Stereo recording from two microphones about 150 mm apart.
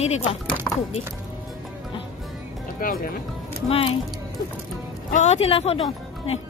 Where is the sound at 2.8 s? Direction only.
75° left (ahead or behind).